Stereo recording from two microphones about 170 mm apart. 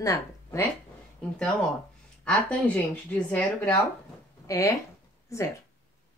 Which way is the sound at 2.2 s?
5° left (ahead or behind).